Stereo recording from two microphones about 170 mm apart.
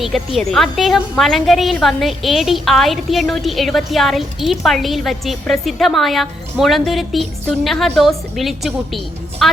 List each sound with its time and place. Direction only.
0.0 s a woman's voice: centre (ahead or behind)